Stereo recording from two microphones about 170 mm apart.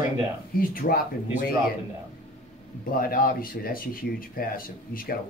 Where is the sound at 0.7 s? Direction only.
55° left (ahead or behind).